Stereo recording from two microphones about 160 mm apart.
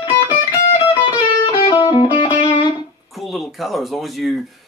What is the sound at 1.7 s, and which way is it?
Music, 30° left (ahead or behind).